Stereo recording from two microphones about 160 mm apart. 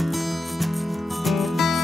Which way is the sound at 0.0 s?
Centre (ahead or behind).